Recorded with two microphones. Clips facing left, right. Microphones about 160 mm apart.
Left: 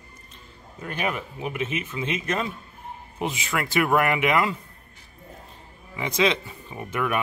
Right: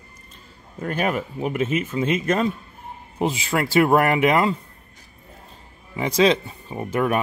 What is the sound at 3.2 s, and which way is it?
Speech, 30° right (ahead or behind).